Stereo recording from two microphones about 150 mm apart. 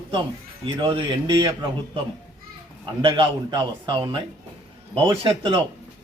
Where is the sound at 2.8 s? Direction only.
35° right (ahead or behind).